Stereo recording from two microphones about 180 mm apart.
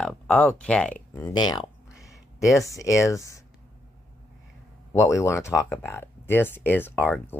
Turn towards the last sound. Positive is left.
turn(degrees=10)  # may be behind; listen again after turning